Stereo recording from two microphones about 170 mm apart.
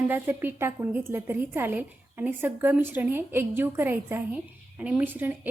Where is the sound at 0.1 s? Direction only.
10° right (ahead or behind).